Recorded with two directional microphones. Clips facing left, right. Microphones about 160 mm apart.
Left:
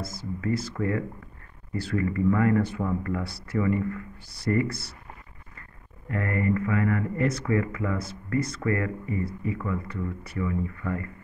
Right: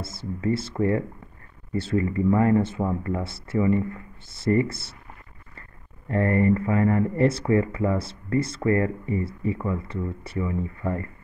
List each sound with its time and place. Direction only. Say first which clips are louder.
0.0 s speech: right 3 dB; 25° right (ahead or behind)
6.0 s speech: right 6 dB; 30° right (ahead or behind)